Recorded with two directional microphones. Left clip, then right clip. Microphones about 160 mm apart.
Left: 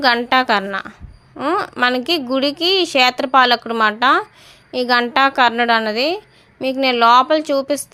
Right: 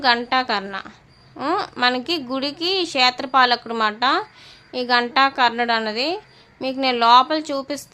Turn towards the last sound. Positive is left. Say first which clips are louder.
# left 7 dB
turn(degrees=20)  # may be behind; listen again after turning